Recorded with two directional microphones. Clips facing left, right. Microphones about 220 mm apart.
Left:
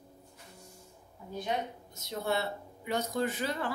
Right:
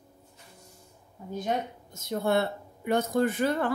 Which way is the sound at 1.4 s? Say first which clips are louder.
Right 4 dB; 50° right (ahead or behind).